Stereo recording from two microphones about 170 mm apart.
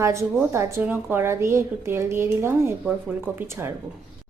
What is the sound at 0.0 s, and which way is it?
A woman's voice, 15° right (ahead or behind).